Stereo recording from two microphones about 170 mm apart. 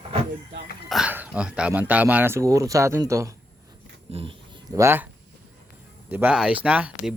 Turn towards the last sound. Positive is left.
turn(degrees=-10)  # may be behind; listen again after turning